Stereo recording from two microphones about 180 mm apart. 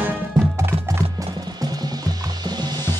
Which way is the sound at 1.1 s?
25° right (ahead or behind).